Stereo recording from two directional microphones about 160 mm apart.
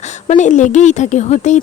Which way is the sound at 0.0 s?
45° left (ahead or behind).